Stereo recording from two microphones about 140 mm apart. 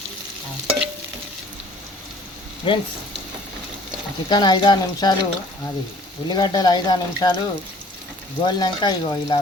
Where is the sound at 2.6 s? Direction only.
35° left (ahead or behind).